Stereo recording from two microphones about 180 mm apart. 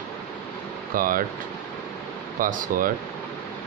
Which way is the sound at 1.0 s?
50° right (ahead or behind).